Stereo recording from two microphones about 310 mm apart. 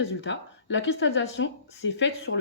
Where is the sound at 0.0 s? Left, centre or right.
Left.